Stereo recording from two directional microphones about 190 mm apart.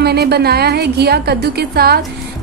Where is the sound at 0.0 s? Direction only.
55° right (ahead or behind).